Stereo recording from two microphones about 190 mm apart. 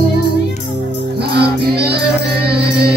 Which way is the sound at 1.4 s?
60° right (ahead or behind).